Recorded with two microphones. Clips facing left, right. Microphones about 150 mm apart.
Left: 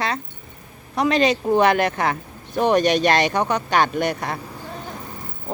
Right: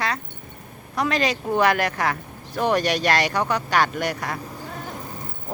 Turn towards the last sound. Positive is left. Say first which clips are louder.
# left 3 dB
turn(degrees=25)  # may be behind; listen again after turning